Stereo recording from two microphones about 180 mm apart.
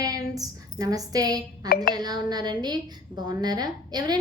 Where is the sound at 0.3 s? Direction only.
20° right (ahead or behind).